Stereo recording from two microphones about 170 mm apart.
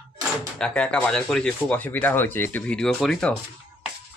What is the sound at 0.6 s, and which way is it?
Speech, 5° left (ahead or behind).